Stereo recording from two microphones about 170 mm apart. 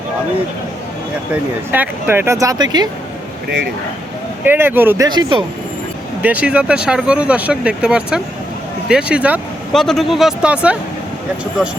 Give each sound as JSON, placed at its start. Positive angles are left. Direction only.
{"t": 1.3, "sound": "speech", "side_deg": -10}
{"t": 4.4, "sound": "speech", "side_deg": -10}
{"t": 5.0, "sound": "speech", "side_deg": -25}
{"t": 6.2, "sound": "speech", "side_deg": -10}